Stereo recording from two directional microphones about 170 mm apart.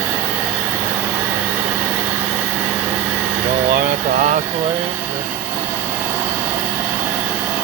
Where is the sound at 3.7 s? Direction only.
50° right (ahead or behind).